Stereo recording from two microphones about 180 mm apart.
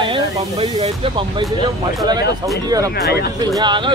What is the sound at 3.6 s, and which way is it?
Speech, 25° right (ahead or behind).